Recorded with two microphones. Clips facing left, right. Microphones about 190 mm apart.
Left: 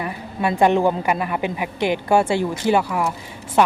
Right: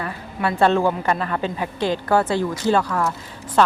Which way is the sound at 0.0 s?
15° left (ahead or behind).